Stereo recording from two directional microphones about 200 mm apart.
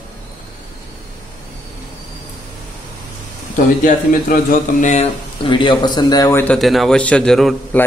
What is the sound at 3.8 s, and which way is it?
Speech, 45° left (ahead or behind).